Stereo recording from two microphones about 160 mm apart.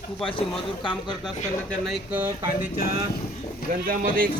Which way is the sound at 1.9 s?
10° right (ahead or behind).